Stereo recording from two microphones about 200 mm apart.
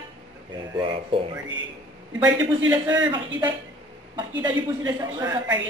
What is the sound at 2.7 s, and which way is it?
Speech, 10° right (ahead or behind).